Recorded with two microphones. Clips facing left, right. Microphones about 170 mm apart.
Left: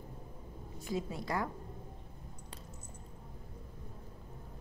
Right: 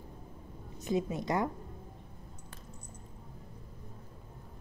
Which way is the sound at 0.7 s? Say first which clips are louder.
Right 6 dB; 20° right (ahead or behind).